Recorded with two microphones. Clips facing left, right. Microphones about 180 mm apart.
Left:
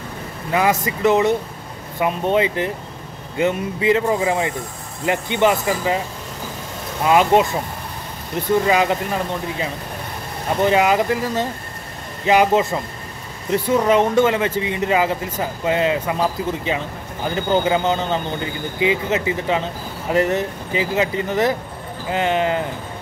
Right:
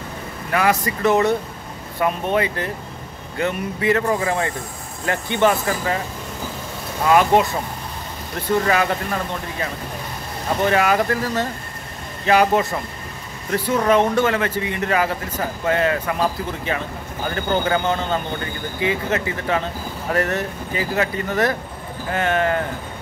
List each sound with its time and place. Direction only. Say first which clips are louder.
0.5 s speech: left 1 dB; 20° left (ahead or behind)
7.1 s speech: left 1 dB; 20° left (ahead or behind)
8.6 s speech: left 2 dB; 15° left (ahead or behind)
10.6 s speech: left 2 dB; 15° left (ahead or behind)
17.3 s speech: left 3 dB; 15° left (ahead or behind)